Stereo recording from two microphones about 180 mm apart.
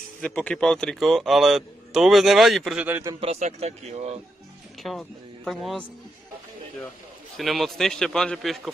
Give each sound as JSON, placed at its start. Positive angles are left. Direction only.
{"t": 0.2, "sound": "a man's voice", "side_deg": 5}
{"t": 3.2, "sound": "speech", "side_deg": -40}
{"t": 4.8, "sound": "speech", "side_deg": 0}
{"t": 7.3, "sound": "a man's voice", "side_deg": 0}